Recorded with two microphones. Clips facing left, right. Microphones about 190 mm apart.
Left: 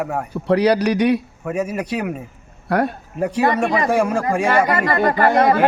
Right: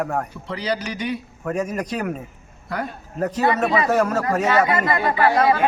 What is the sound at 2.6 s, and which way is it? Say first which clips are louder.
Speech: left 9 dB; 70° left (ahead or behind).